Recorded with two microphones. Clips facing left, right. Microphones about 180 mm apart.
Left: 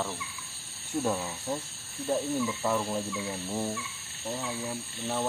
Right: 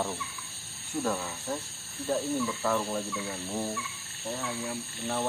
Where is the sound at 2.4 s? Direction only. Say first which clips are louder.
Even; 10° left (ahead or behind).